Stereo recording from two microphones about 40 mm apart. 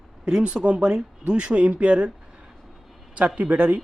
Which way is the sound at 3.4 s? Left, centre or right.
Right.